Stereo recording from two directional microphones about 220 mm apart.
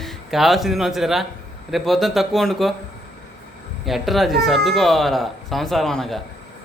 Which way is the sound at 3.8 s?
Centre (ahead or behind).